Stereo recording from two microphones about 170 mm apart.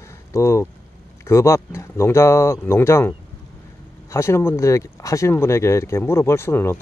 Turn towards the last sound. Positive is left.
turn(degrees=15)  # may be behind; listen again after turning